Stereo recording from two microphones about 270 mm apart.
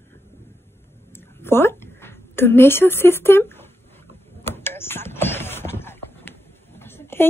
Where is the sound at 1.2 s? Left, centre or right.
Centre.